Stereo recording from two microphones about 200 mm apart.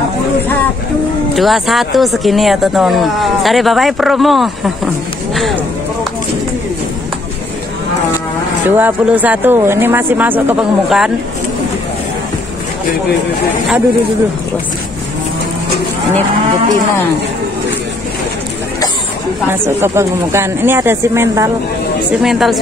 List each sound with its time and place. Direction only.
1.3 s speech: centre (ahead or behind)
8.6 s speech: 10° right (ahead or behind)
19.5 s speech: 10° right (ahead or behind)
22.2 s speech: centre (ahead or behind)